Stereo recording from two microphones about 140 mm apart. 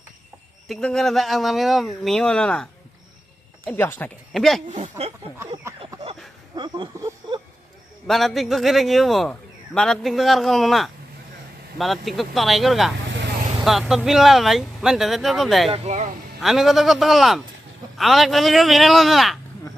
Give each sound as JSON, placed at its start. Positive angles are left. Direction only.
{"t": 0.7, "sound": "speech", "side_deg": 5}
{"t": 3.8, "sound": "speech", "side_deg": 15}
{"t": 4.3, "sound": "speech", "side_deg": 0}
{"t": 4.7, "sound": "speech", "side_deg": -50}
{"t": 5.8, "sound": "a sound", "side_deg": -45}
{"t": 6.6, "sound": "speech", "side_deg": -35}
{"t": 8.0, "sound": "speech", "side_deg": 0}
{"t": 15.7, "sound": "speech", "side_deg": -50}
{"t": 16.4, "sound": "speech", "side_deg": 0}